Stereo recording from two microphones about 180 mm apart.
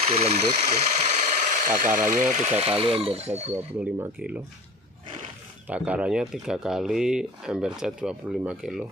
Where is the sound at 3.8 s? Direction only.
5° right (ahead or behind).